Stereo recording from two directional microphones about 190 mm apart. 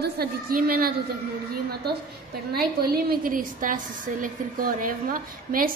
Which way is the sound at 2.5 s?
55° right (ahead or behind).